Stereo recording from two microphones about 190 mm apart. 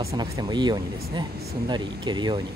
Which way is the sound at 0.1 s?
20° right (ahead or behind).